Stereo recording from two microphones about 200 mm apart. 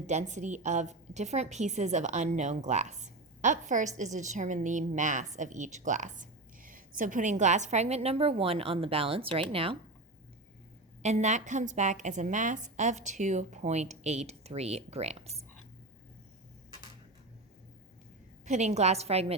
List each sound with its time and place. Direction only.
0.1 s a woman's voice: 35° right (ahead or behind)
11.0 s a woman's voice: 35° right (ahead or behind)
18.4 s a woman's voice: 35° right (ahead or behind)